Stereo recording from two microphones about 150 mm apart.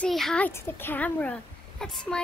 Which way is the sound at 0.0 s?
5° left (ahead or behind).